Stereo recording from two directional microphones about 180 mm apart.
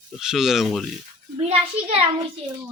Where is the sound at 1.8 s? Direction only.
35° right (ahead or behind).